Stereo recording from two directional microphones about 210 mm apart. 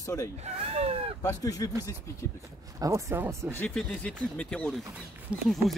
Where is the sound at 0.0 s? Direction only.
15° left (ahead or behind).